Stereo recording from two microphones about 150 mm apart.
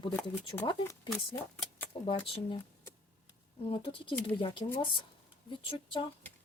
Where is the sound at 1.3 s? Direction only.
15° left (ahead or behind).